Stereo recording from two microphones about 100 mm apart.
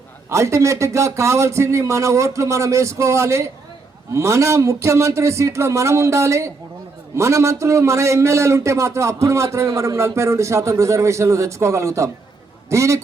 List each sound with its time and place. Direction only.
0.3 s a man's voice: 30° right (ahead or behind)